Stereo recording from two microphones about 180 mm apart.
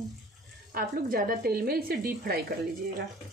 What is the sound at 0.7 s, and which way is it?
Speech, 55° right (ahead or behind).